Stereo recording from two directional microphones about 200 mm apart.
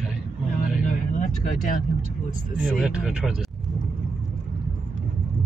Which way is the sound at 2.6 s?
Centre (ahead or behind).